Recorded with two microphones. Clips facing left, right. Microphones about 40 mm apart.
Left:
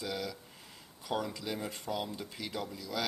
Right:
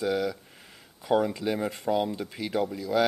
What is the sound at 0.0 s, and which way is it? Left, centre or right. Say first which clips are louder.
Speech: right 11 dB; right.